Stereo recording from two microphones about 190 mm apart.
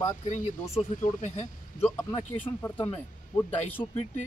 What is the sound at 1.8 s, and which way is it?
Speech, 15° left (ahead or behind).